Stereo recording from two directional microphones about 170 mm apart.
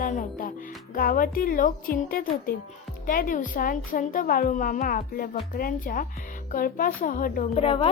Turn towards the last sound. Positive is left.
turn(degrees=35)  # may be behind; listen again after turning